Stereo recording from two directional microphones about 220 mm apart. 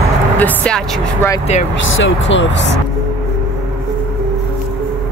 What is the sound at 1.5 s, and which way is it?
Speech, 30° left (ahead or behind).